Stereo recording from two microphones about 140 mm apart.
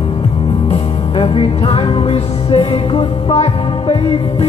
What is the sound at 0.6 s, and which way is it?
Music, 40° left (ahead or behind).